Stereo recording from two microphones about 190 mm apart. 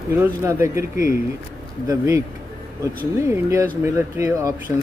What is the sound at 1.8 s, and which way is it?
Speech, 15° right (ahead or behind).